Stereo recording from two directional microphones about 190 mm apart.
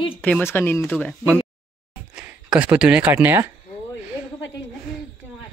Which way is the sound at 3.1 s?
15° right (ahead or behind).